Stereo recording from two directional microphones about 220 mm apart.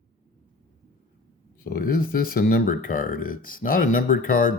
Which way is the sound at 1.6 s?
40° left (ahead or behind).